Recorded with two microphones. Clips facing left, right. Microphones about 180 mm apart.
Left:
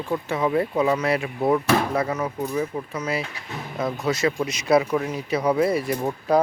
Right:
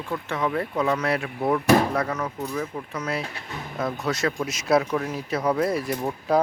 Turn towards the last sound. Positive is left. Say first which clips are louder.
# left 2 dB
turn(degrees=0)  # may be behind; listen again after turning